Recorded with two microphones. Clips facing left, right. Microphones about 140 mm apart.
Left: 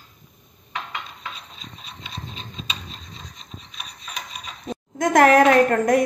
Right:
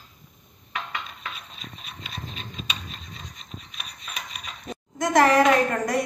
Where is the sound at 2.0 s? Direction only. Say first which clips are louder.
Left 1 dB; 25° left (ahead or behind).